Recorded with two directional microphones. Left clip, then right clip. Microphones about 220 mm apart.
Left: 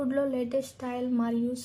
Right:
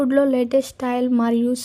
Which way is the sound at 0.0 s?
45° right (ahead or behind).